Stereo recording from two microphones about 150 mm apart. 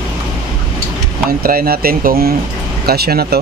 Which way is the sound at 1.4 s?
75° right (ahead or behind).